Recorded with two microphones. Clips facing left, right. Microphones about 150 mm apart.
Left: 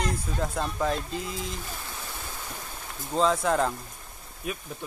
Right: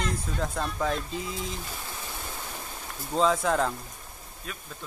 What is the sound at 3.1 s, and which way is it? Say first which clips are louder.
Speech: even; centre (ahead or behind).